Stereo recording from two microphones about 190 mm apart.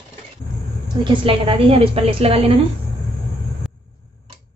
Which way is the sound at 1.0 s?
25° right (ahead or behind).